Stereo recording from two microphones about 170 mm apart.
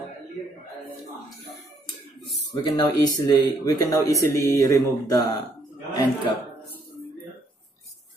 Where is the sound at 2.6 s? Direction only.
25° left (ahead or behind).